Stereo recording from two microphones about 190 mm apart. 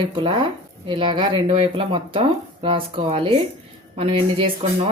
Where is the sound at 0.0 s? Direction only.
25° right (ahead or behind).